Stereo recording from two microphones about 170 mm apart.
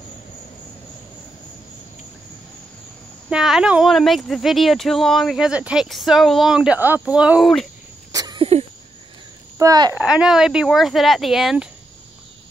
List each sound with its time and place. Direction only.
3.3 s speech: 5° right (ahead or behind)
8.1 s a sound: 25° right (ahead or behind)
9.6 s speech: 20° right (ahead or behind)
9.9 s speech: 5° right (ahead or behind)